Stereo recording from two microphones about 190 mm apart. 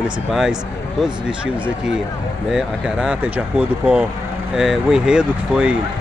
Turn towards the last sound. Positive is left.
turn(degrees=-5)  # may be behind; listen again after turning